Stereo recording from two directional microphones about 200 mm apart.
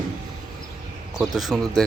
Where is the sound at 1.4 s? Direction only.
Centre (ahead or behind).